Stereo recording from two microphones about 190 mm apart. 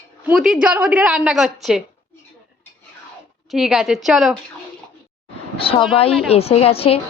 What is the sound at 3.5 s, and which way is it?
Speech, centre (ahead or behind).